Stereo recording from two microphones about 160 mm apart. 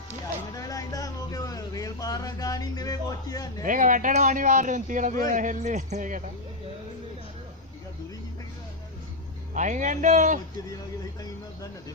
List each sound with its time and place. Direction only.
0.6 s a sound: 20° left (ahead or behind)
3.6 s speech: 55° right (ahead or behind)
9.5 s speech: 50° right (ahead or behind)